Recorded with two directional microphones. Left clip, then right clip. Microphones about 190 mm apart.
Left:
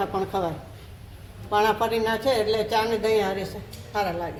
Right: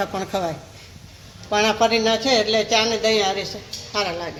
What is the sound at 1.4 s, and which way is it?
Speech, 35° right (ahead or behind).